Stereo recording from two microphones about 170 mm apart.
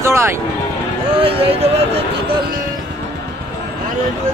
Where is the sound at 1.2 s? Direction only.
35° right (ahead or behind).